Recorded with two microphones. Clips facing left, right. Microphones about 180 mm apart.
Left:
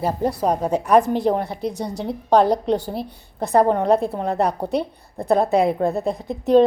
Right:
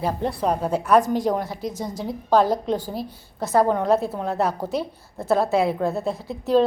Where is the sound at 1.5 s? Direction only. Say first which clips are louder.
Left 3 dB; 5° right (ahead or behind).